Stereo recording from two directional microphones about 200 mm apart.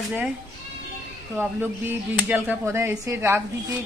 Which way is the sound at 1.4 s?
10° right (ahead or behind).